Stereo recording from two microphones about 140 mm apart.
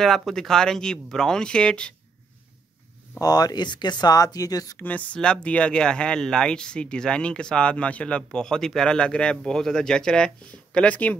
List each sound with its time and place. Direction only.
0.0 s speech: centre (ahead or behind)
3.2 s speech: 25° left (ahead or behind)
4.8 s speech: 10° left (ahead or behind)